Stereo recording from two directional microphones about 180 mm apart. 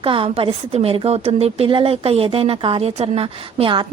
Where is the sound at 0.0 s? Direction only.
30° right (ahead or behind).